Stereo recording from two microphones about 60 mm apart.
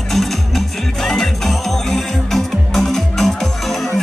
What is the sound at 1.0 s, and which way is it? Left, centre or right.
Music, centre.